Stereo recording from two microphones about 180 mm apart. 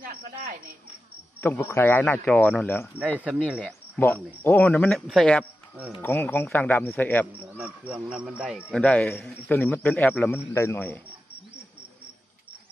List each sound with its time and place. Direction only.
0.0 s cricket: 50° right (ahead or behind)
1.4 s a man's voice: 10° left (ahead or behind)
3.0 s speech: 10° right (ahead or behind)
4.0 s a man's voice: 10° left (ahead or behind); by 6.0 s 5° right (ahead or behind)
6.0 s a man's voice: 10° left (ahead or behind)
7.6 s speech: centre (ahead or behind)
8.8 s speech: 5° left (ahead or behind)
9.3 s a man's voice: 15° left (ahead or behind)